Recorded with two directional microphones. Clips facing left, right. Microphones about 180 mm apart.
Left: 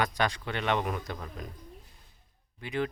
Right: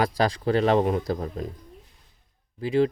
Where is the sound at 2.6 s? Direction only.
30° right (ahead or behind).